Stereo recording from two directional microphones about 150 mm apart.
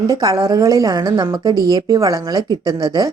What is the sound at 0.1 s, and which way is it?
Speech, 25° right (ahead or behind).